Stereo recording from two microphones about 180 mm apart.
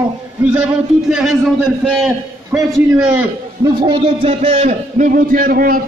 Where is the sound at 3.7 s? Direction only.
30° right (ahead or behind); by 5.8 s 50° right (ahead or behind).